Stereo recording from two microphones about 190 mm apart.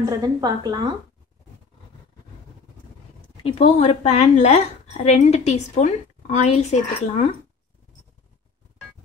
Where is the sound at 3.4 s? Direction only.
30° left (ahead or behind).